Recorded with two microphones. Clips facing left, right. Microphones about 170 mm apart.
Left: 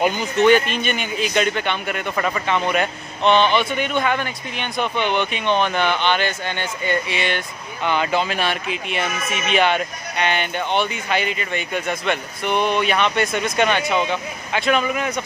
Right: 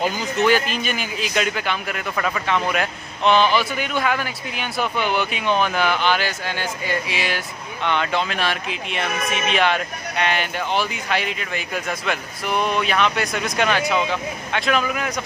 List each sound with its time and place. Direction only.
0.1 s a man's voice: 5° right (ahead or behind)